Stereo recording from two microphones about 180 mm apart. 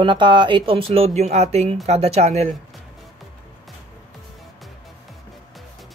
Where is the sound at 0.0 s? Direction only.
25° right (ahead or behind).